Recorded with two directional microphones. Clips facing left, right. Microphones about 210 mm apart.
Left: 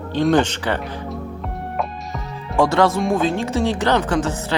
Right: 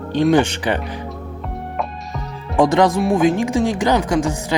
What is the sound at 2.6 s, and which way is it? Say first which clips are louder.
Speech: right 2 dB; 15° right (ahead or behind).